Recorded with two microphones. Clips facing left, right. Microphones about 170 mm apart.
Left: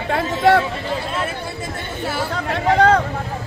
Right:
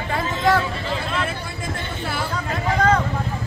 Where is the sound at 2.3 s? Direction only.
70° left (ahead or behind).